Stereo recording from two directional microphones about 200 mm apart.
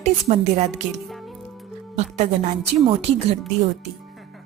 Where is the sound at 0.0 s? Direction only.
35° right (ahead or behind).